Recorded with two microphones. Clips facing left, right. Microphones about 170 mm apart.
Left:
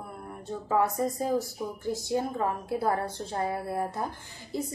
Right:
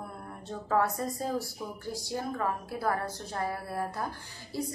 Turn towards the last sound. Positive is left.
turn(degrees=20)  # may be behind; listen again after turning